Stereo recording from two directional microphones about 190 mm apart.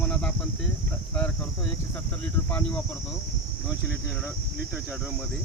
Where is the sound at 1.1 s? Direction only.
10° left (ahead or behind).